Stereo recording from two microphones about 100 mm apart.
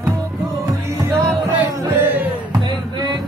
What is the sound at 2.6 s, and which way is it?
Music, 45° right (ahead or behind).